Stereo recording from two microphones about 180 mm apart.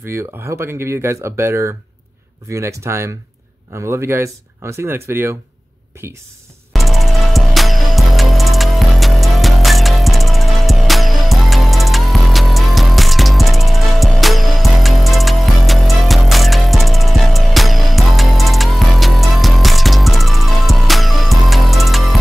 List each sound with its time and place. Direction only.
0.1 s speech: 15° right (ahead or behind)
6.7 s music: centre (ahead or behind)